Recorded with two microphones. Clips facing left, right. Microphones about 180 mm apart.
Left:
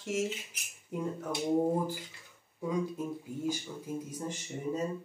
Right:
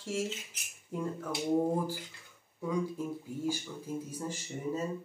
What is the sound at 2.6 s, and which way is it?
Speech, 20° left (ahead or behind).